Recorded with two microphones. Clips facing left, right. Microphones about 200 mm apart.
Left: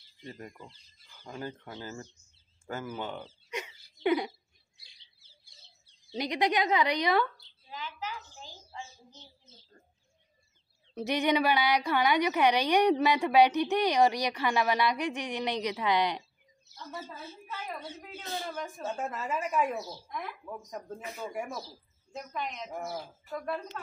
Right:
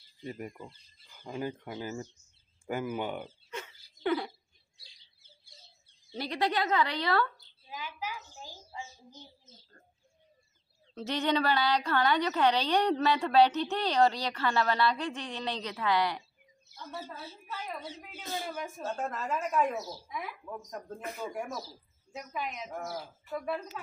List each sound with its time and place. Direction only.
0.2 s speech: 10° right (ahead or behind)
3.4 s a sound: 15° left (ahead or behind)
4.0 s speech: 15° left (ahead or behind)
6.1 s a woman's voice: 15° left (ahead or behind)
7.7 s a sound: 10° right (ahead or behind)
11.0 s a woman's voice: 15° left (ahead or behind)
18.4 s speech: 5° right (ahead or behind)
22.1 s speech: 5° right (ahead or behind)
22.7 s a woman's voice: 10° left (ahead or behind)
23.3 s speech: 5° right (ahead or behind)